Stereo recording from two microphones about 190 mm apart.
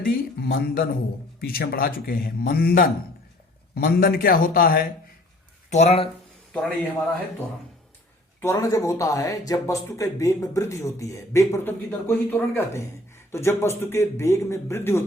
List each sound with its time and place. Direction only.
0.0 s speech: 55° left (ahead or behind)
5.7 s speech: 35° left (ahead or behind)
8.4 s speech: 15° left (ahead or behind)